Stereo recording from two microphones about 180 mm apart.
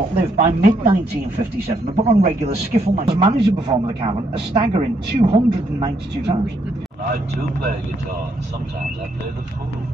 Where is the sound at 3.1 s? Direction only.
25° right (ahead or behind).